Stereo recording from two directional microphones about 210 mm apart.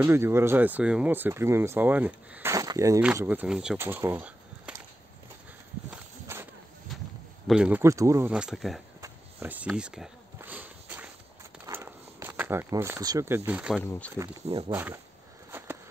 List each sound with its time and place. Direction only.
0.0 s speech: 10° right (ahead or behind)
5.9 s walk: 10° right (ahead or behind)
7.4 s speech: 5° right (ahead or behind)
9.0 s a sound: 10° right (ahead or behind)
13.8 s speech: 5° left (ahead or behind)
14.1 s speech: 15° right (ahead or behind)
15.5 s walk: 10° right (ahead or behind)